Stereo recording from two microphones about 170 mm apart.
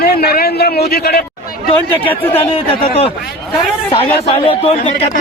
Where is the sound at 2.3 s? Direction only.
35° left (ahead or behind).